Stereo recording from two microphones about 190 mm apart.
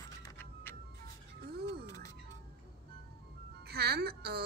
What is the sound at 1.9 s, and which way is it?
Music, 15° left (ahead or behind).